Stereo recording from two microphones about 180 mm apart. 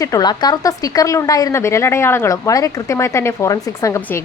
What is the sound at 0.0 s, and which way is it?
A woman's voice, 20° left (ahead or behind).